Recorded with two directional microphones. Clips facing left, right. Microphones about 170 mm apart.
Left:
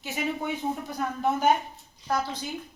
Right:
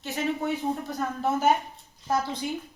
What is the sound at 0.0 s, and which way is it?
A woman's voice, centre (ahead or behind).